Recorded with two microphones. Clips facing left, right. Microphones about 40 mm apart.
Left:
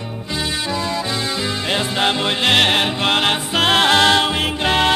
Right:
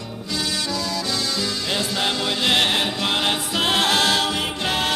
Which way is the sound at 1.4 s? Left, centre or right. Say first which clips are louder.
Left 4 dB; left.